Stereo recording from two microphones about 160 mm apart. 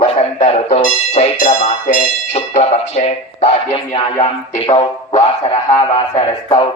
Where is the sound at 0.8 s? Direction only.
45° left (ahead or behind).